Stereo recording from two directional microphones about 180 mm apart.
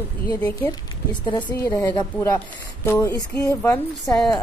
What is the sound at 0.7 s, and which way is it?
A woman's voice, 25° left (ahead or behind).